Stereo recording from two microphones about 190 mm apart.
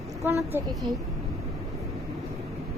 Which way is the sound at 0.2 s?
15° right (ahead or behind).